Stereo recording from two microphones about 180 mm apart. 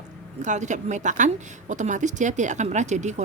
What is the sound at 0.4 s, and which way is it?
A woman's voice, 40° right (ahead or behind).